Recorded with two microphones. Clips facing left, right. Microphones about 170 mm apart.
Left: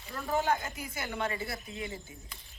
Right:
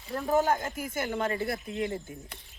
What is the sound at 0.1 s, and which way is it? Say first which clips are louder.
Speech: right 4 dB; 45° right (ahead or behind).